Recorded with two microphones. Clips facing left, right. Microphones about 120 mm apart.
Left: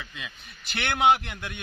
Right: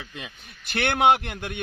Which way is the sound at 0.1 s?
45° right (ahead or behind).